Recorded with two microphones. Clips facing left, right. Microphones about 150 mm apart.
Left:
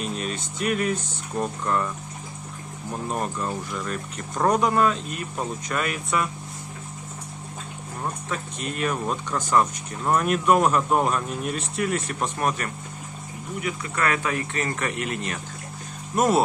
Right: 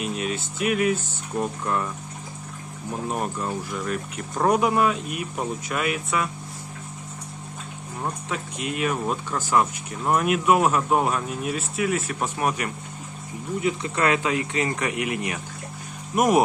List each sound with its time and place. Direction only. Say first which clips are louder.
0.0 s speech: right 2 dB; 5° right (ahead or behind)
3.1 s speech: even; 5° right (ahead or behind)
8.0 s speech: right 1 dB; 10° right (ahead or behind)
13.6 s speech: right 3 dB; 25° right (ahead or behind)